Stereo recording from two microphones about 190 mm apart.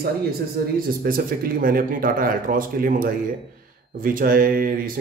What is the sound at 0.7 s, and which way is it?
Speech, 50° right (ahead or behind).